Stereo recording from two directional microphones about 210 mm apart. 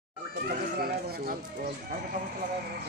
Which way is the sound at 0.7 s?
45° right (ahead or behind).